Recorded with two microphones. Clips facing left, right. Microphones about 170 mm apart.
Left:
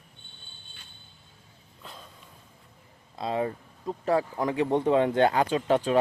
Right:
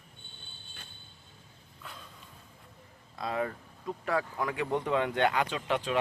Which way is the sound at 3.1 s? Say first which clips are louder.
Left 4 dB; 25° left (ahead or behind).